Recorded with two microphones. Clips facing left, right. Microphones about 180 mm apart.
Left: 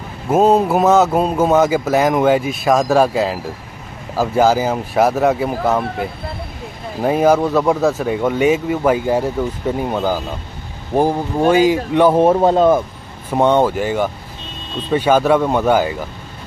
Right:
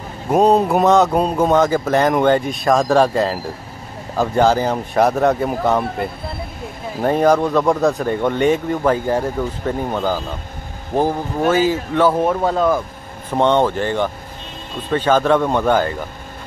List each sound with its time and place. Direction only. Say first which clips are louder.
0.3 s speech: left 1 dB; 5° left (ahead or behind)
12.2 s speech: left 5 dB; 30° left (ahead or behind)
13.3 s speech: left 2 dB; 10° left (ahead or behind)